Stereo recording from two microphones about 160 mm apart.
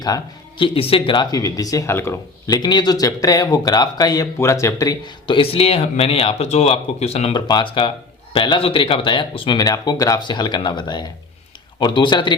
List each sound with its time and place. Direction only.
0.6 s speech: 35° left (ahead or behind); by 2.6 s 15° left (ahead or behind)
2.6 s speech: 25° left (ahead or behind)
7.4 s speech: 30° left (ahead or behind)